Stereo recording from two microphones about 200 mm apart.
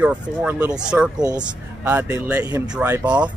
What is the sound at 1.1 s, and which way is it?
Speech, 20° right (ahead or behind).